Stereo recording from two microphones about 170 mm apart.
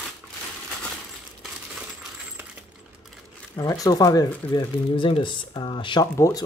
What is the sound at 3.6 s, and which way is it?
Speech, 20° left (ahead or behind).